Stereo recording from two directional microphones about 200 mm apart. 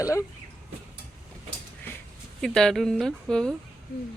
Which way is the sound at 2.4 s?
5° left (ahead or behind).